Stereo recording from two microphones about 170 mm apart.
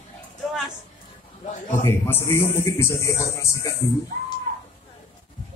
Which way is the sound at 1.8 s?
15° left (ahead or behind).